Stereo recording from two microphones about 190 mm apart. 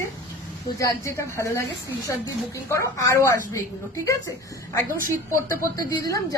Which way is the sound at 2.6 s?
15° left (ahead or behind).